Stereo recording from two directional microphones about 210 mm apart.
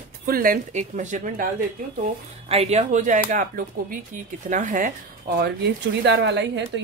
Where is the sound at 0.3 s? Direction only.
40° right (ahead or behind).